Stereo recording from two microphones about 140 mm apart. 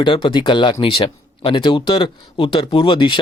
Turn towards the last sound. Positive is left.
turn(degrees=35)  # may be behind; listen again after turning